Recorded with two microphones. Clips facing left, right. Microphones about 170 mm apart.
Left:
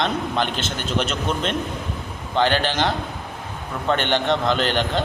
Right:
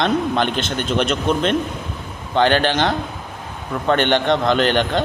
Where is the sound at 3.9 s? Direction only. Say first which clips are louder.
Right 4 dB; 55° right (ahead or behind).